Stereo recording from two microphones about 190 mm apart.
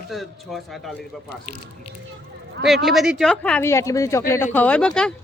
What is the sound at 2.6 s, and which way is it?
Speech, centre (ahead or behind).